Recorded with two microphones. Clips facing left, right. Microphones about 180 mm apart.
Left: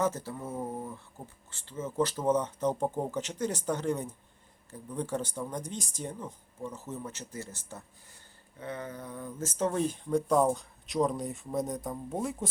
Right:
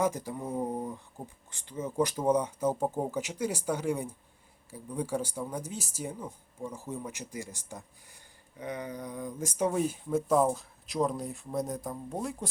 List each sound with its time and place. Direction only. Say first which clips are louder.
0.0 s speech: right 1 dB; 15° right (ahead or behind)